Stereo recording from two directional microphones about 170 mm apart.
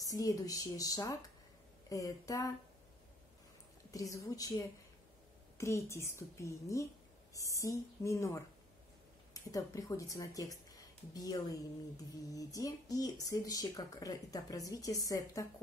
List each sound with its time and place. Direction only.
0.0 s speech: 20° left (ahead or behind)
3.9 s a woman's voice: 20° left (ahead or behind)